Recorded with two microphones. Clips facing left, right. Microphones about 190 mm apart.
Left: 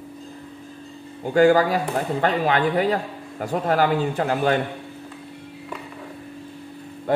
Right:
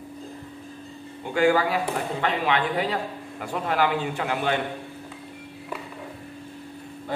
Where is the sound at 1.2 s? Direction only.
40° left (ahead or behind).